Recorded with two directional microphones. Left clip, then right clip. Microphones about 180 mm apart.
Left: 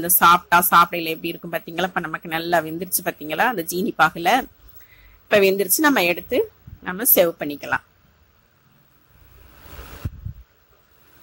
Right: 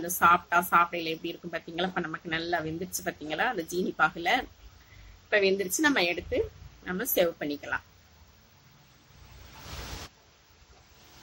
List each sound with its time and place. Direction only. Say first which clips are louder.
0.0 s a woman's voice: left 8 dB; 50° left (ahead or behind)